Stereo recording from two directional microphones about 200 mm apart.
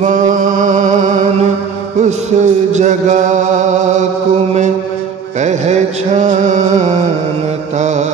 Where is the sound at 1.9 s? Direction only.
35° right (ahead or behind).